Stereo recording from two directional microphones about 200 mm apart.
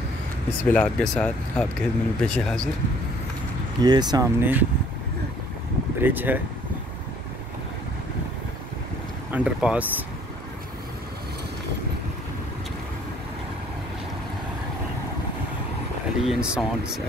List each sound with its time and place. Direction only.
0.5 s speech: 5° left (ahead or behind)
3.8 s speech: 20° right (ahead or behind)
5.9 s speech: 10° right (ahead or behind)
9.3 s speech: 5° right (ahead or behind)
16.3 s speech: 5° right (ahead or behind)